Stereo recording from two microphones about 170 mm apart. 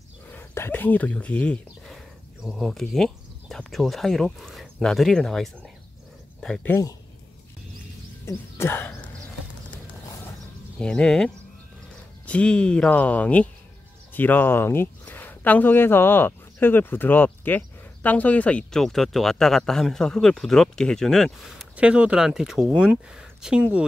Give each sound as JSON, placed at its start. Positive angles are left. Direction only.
{"t": 0.3, "sound": "speech", "side_deg": 15}
{"t": 6.7, "sound": "speech", "side_deg": 20}
{"t": 8.3, "sound": "speech", "side_deg": 15}
{"t": 10.8, "sound": "speech", "side_deg": 5}